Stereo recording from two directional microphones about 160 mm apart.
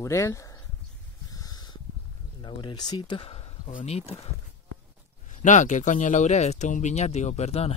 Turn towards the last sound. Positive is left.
turn(degrees=40)  # may be behind; listen again after turning